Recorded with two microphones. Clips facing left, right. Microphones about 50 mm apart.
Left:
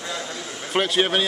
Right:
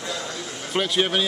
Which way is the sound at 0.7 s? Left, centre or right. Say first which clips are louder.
Left 2 dB; centre.